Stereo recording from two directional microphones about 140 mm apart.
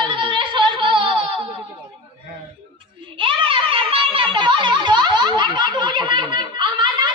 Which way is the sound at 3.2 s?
40° right (ahead or behind).